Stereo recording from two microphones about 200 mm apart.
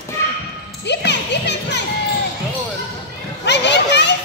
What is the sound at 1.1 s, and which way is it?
Music, 60° left (ahead or behind).